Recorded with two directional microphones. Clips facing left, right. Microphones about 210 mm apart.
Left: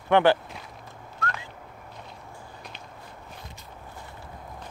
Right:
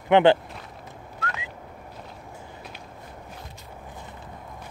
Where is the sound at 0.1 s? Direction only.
20° right (ahead or behind).